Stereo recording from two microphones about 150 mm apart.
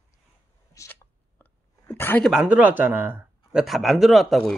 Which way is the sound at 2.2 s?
5° right (ahead or behind).